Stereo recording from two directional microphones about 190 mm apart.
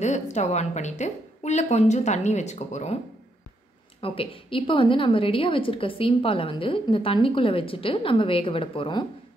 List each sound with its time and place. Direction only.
0.0 s a woman's voice: 35° left (ahead or behind)
4.0 s a woman's voice: 30° left (ahead or behind)